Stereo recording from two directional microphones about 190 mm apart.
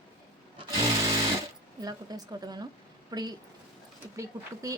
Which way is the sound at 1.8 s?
20° right (ahead or behind).